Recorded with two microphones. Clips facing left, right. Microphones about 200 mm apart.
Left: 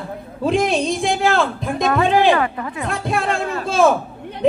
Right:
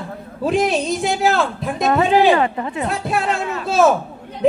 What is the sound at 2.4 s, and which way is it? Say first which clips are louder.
Speech: right 2 dB; 25° right (ahead or behind).